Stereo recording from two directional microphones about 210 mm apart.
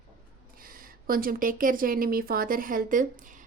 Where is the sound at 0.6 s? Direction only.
40° right (ahead or behind).